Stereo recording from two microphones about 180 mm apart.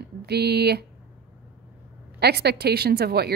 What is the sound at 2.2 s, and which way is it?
A woman's voice, 65° right (ahead or behind).